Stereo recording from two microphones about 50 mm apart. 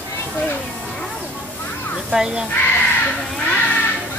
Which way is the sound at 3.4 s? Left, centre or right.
Left.